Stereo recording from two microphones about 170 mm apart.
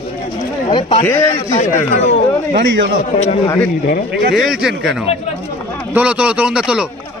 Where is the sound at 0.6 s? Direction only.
35° left (ahead or behind).